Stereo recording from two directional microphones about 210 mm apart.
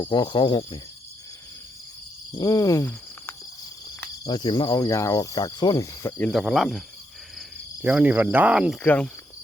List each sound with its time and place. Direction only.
0.0 s speech: 20° left (ahead or behind)
2.4 s speech: 15° left (ahead or behind); by 6.8 s centre (ahead or behind)
7.3 s cricket: 5° right (ahead or behind)
8.8 s speech: 5° left (ahead or behind)